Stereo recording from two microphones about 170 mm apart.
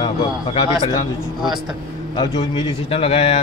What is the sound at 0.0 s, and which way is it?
A man's voice, 30° left (ahead or behind).